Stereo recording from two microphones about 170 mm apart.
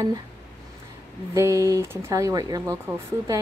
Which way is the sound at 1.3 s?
20° right (ahead or behind).